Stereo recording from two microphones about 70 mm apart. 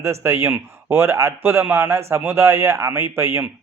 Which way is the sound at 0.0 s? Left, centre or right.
Right.